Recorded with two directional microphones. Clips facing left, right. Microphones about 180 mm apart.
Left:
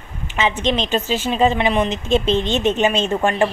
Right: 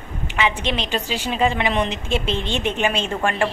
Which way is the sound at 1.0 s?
15° right (ahead or behind).